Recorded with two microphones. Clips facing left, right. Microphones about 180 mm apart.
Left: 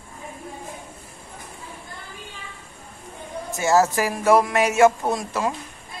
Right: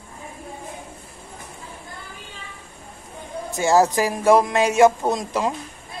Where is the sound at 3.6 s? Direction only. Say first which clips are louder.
Right 2 dB; 15° right (ahead or behind).